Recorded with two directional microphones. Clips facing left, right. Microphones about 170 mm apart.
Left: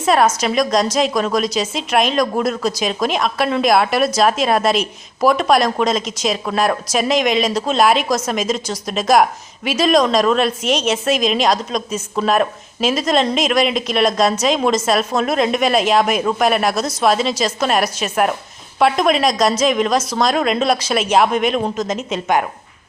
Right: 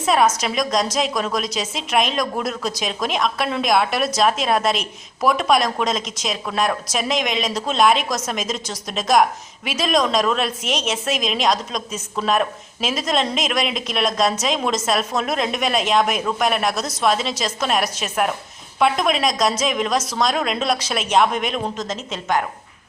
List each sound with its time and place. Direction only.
0.0 s a woman's voice: centre (ahead or behind)
21.8 s a woman's voice: 15° left (ahead or behind)